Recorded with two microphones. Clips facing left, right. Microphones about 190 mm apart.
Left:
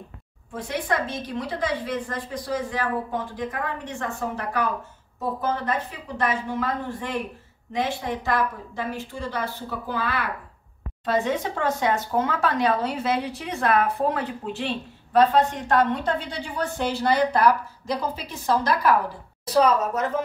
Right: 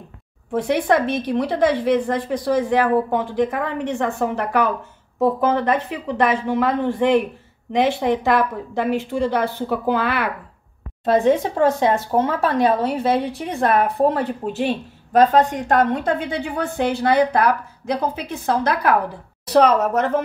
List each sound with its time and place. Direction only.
0.5 s a woman's voice: 65° right (ahead or behind)
5.2 s a woman's voice: 85° right; by 10.3 s 70° right (ahead or behind)
11.2 s a woman's voice: 30° right (ahead or behind)
14.4 s a woman's voice: 45° right (ahead or behind)
19.4 s a woman's voice: 70° right (ahead or behind)